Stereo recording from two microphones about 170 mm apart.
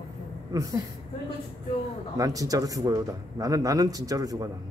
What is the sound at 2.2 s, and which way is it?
A man's voice, 20° right (ahead or behind).